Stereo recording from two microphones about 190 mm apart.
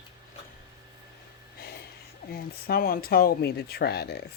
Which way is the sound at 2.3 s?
55° left (ahead or behind).